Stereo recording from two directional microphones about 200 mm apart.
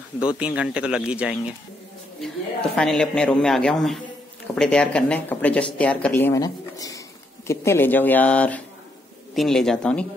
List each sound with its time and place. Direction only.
0.2 s a man's voice: 5° right (ahead or behind)